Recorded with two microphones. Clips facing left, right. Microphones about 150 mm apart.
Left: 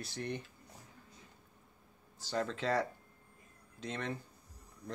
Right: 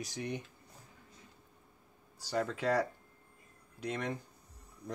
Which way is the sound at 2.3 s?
10° right (ahead or behind).